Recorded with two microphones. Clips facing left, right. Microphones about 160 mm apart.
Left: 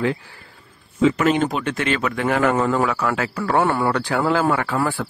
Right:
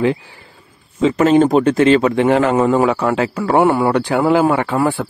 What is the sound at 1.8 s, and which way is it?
Speech, 30° right (ahead or behind).